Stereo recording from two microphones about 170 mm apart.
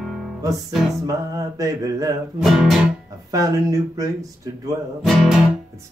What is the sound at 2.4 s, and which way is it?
Music, centre (ahead or behind).